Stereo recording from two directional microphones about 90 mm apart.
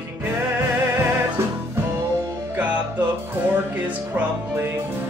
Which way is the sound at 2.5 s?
15° right (ahead or behind).